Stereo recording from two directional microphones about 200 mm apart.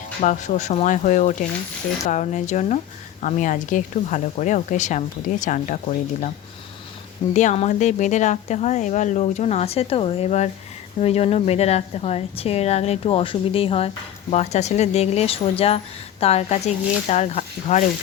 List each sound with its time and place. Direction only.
0.2 s a woman's voice: 35° left (ahead or behind)
7.3 s a woman's voice: 35° left (ahead or behind)